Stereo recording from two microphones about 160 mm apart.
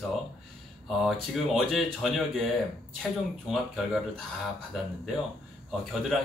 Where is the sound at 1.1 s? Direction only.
Centre (ahead or behind).